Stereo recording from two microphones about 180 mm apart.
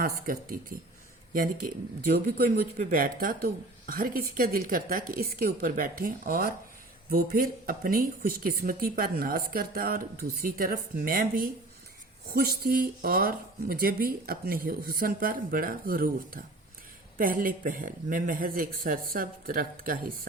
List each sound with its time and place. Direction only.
0.0 s speech: 50° right (ahead or behind)